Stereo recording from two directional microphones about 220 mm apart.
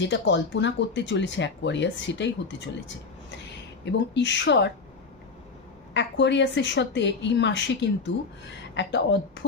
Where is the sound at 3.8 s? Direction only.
55° left (ahead or behind).